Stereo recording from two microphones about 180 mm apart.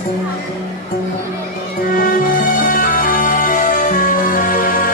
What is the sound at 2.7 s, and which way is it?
Music, 50° left (ahead or behind).